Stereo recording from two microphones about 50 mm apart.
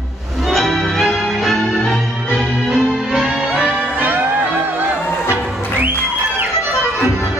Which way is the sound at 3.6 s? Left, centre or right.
Right.